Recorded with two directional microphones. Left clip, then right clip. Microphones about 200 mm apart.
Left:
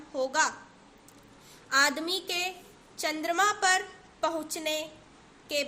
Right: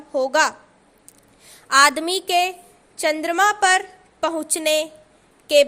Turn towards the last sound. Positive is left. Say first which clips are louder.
# right 16 dB
turn(degrees=-50)  # may be behind; listen again after turning